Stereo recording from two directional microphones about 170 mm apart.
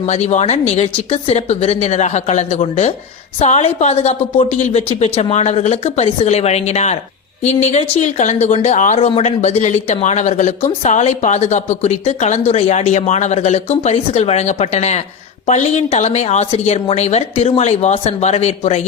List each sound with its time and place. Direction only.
0.0 s speech: 45° left (ahead or behind)